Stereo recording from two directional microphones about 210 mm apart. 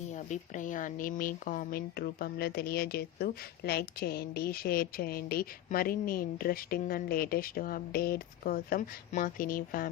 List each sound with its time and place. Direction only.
0.1 s speech: 35° left (ahead or behind)